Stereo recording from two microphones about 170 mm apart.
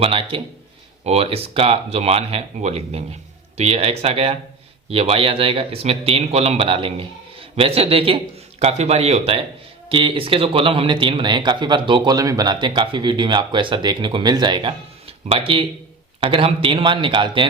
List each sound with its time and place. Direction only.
0.0 s speech: 35° right (ahead or behind)